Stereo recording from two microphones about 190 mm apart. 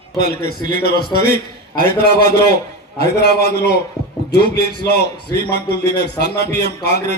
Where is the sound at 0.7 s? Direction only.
55° left (ahead or behind).